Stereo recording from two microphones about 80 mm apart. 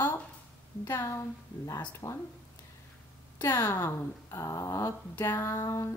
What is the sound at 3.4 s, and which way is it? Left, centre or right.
A woman's voice, left.